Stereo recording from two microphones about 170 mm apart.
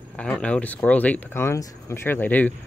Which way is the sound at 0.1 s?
5° left (ahead or behind).